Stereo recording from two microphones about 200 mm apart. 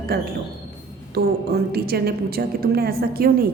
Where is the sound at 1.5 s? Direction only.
50° right (ahead or behind).